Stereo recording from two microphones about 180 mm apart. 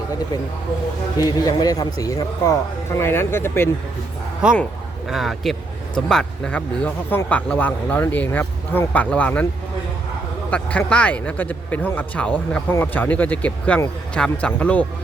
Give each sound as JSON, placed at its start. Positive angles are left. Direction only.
{"t": 1.4, "sound": "speech", "side_deg": 20}
{"t": 4.4, "sound": "speech", "side_deg": -5}
{"t": 10.5, "sound": "speech", "side_deg": 5}